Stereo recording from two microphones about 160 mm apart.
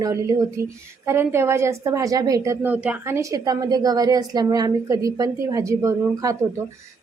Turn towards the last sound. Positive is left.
turn(degrees=-20)  # may be behind; listen again after turning